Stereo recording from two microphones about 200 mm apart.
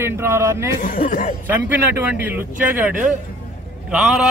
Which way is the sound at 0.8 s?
45° left (ahead or behind).